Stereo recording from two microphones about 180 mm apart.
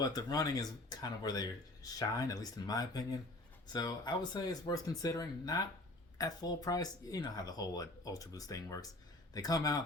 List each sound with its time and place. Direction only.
0.0 s speech: 20° left (ahead or behind)